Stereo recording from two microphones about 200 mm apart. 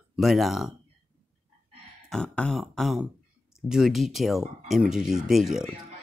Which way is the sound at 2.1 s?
5° left (ahead or behind).